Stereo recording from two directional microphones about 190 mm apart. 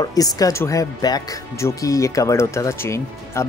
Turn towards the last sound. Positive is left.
turn(degrees=15)  # may be behind; listen again after turning